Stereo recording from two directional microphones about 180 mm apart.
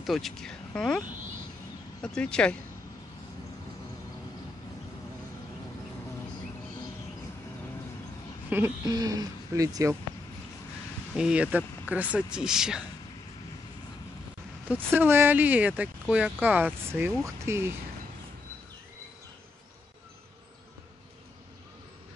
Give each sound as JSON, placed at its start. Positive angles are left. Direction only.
{"t": 0.0, "sound": "speech", "side_deg": 0}
{"t": 8.5, "sound": "speech", "side_deg": -10}
{"t": 11.1, "sound": "speech", "side_deg": -5}
{"t": 14.9, "sound": "speech", "side_deg": -10}